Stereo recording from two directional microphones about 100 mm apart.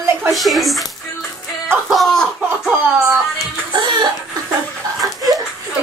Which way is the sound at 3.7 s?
45° right (ahead or behind).